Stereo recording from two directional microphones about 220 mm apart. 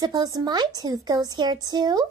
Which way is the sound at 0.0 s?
15° right (ahead or behind).